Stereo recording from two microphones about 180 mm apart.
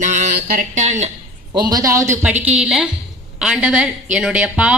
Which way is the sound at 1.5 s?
20° right (ahead or behind).